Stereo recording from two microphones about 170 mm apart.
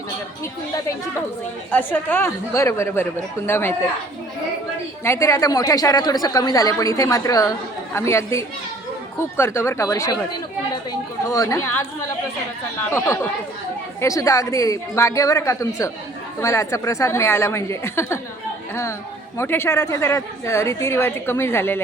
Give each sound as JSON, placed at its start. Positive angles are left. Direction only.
{"t": 1.7, "sound": "a woman's voice", "side_deg": 10}
{"t": 5.0, "sound": "a man's voice", "side_deg": 15}
{"t": 11.3, "sound": "a woman's voice", "side_deg": 20}
{"t": 14.0, "sound": "a man's voice", "side_deg": 20}